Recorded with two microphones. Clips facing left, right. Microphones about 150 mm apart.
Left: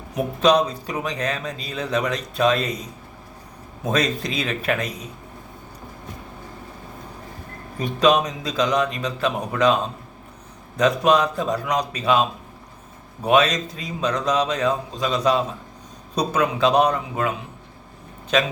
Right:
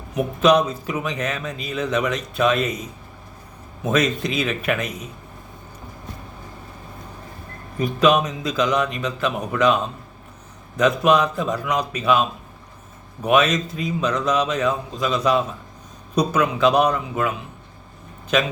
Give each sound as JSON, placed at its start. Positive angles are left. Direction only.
{"t": 0.1, "sound": "a man's voice", "side_deg": 35}
{"t": 3.8, "sound": "a man's voice", "side_deg": 35}
{"t": 7.9, "sound": "a man's voice", "side_deg": 35}
{"t": 13.2, "sound": "a man's voice", "side_deg": 30}